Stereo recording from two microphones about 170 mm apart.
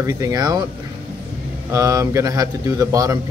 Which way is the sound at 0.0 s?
20° right (ahead or behind).